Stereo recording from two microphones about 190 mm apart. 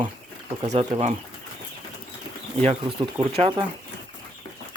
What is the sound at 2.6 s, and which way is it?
Speech, 30° right (ahead or behind).